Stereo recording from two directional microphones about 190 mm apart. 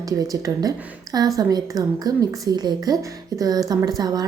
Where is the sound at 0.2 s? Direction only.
20° right (ahead or behind).